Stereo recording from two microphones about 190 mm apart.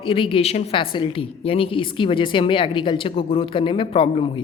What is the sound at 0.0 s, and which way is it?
A woman's voice, 25° left (ahead or behind).